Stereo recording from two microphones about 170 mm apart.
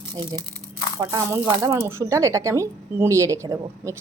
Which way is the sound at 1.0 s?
15° right (ahead or behind).